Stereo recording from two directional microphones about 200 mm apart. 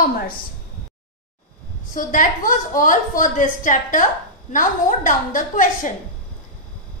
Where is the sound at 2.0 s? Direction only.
40° left (ahead or behind).